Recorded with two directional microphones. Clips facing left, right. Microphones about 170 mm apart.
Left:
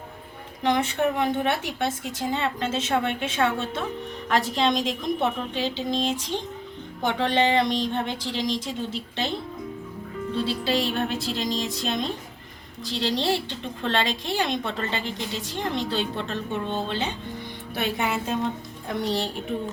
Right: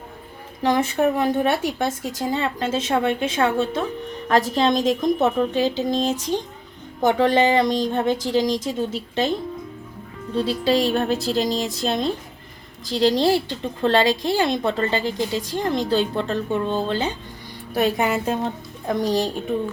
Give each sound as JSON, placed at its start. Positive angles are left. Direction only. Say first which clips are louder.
{"t": 0.6, "sound": "a woman's voice", "louder": "right 4 dB", "side_deg": -35}
{"t": 10.3, "sound": "a woman's voice", "louder": "right 6 dB", "side_deg": -40}
{"t": 17.7, "sound": "a woman's voice", "louder": "right 6 dB", "side_deg": -40}